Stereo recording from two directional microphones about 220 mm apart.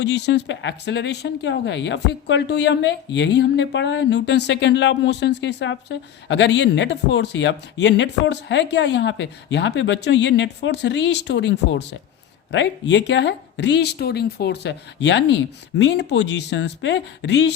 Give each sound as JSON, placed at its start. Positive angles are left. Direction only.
{"t": 0.0, "sound": "speech", "side_deg": 50}